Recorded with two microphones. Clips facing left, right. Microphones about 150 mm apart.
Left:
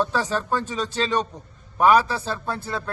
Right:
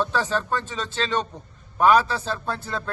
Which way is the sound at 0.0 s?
10° left (ahead or behind).